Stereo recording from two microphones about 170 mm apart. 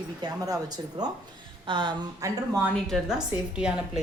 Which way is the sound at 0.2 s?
20° right (ahead or behind).